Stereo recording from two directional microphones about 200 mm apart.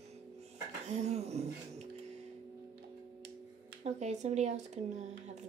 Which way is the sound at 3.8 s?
35° right (ahead or behind).